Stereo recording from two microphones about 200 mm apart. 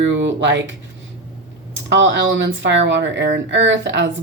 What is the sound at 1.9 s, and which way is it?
Speech, 65° right (ahead or behind).